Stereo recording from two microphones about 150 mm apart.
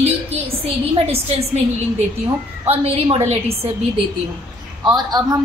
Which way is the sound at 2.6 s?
40° right (ahead or behind).